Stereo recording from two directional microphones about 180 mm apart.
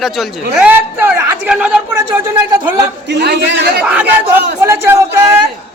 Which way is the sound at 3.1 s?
70° right (ahead or behind).